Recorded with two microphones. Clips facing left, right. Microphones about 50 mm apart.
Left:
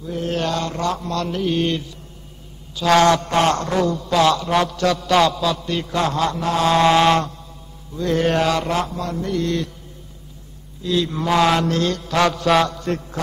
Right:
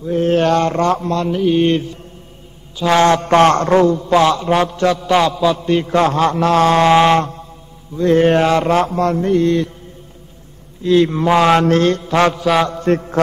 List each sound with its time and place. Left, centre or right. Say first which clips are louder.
0.0 s a man's voice: right 9 dB; right
1.3 s mantra: right 7 dB; centre
1.6 s a man's voice: right 7 dB; right
3.0 s a man's voice: right 7 dB; right
4.9 s a sound: right 2 dB; centre; by 6.4 s right
6.4 s mantra: right 7 dB; right
6.7 s a sound: right 1 dB; right
8.0 s a man's voice: right 6 dB; right
10.8 s a man's voice: right 8 dB; right
11.2 s a sound: right 3 dB; right
11.6 s a man's voice: right 7 dB; right
12.0 s a sound: right 4 dB; right
12.4 s mantra: right 2 dB; centre
12.6 s mantra: right 7 dB; right